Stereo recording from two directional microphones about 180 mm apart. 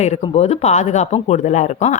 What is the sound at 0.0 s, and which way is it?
Speech, 35° left (ahead or behind).